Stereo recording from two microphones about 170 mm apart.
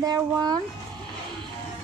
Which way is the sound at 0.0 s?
20° right (ahead or behind).